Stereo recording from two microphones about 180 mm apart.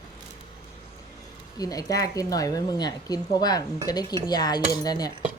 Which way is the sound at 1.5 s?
20° left (ahead or behind).